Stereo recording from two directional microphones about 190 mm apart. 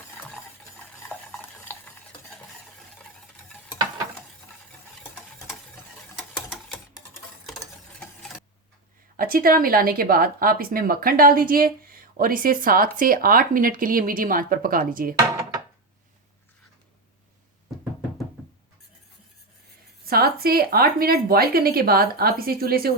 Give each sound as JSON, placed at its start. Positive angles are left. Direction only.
{"t": 1.7, "sound": "stir", "side_deg": 10}
{"t": 6.1, "sound": "ratchet", "side_deg": -5}
{"t": 7.4, "sound": "stir", "side_deg": 0}
{"t": 9.1, "sound": "speech", "side_deg": -50}
{"t": 20.1, "sound": "speech", "side_deg": -55}